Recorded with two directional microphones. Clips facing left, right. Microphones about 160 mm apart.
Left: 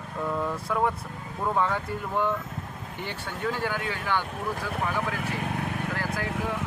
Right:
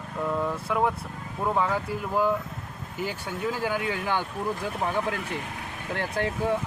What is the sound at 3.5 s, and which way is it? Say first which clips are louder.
Speech: right 2 dB; 15° right (ahead or behind).